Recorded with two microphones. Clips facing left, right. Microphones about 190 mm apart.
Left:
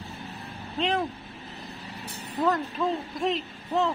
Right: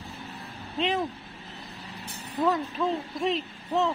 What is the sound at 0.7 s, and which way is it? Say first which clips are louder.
Speech: even; centre (ahead or behind).